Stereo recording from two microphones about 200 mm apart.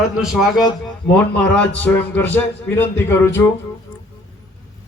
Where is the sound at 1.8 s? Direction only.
10° left (ahead or behind).